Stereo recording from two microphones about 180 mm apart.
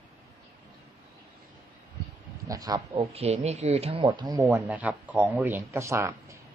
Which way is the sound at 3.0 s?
35° right (ahead or behind).